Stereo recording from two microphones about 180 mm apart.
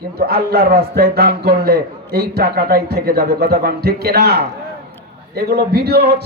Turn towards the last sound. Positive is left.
turn(degrees=-60)  # may be behind; listen again after turning